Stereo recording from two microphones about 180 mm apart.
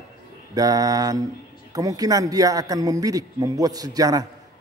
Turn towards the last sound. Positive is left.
turn(degrees=-20)  # may be behind; listen again after turning